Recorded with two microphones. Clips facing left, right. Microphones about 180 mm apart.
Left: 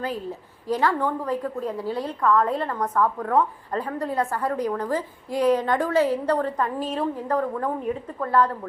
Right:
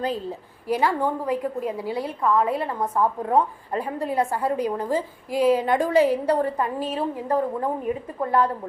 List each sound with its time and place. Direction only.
0.7 s a woman's voice: 10° right (ahead or behind)
2.9 s a woman's voice: 25° right (ahead or behind)
7.8 s a woman's voice: 5° right (ahead or behind)
8.2 s a woman's voice: 15° right (ahead or behind)